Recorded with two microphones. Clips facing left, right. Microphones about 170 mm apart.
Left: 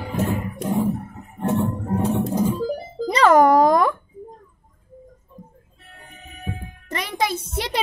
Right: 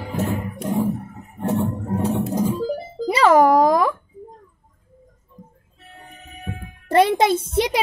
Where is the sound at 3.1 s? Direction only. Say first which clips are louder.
Even; 5° right (ahead or behind).